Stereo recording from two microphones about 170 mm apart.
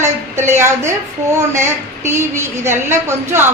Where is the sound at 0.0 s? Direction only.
15° right (ahead or behind).